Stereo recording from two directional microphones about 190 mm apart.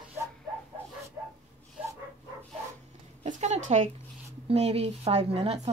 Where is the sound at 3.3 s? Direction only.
35° right (ahead or behind).